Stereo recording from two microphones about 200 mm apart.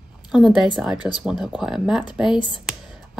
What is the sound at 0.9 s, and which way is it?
Speech, 20° left (ahead or behind).